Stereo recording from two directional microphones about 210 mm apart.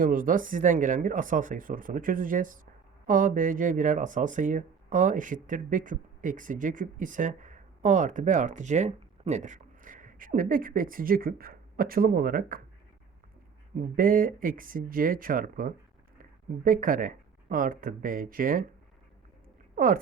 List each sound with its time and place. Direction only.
0.0 s speech: 40° right (ahead or behind)
13.7 s speech: 40° right (ahead or behind)
19.7 s speech: 40° right (ahead or behind)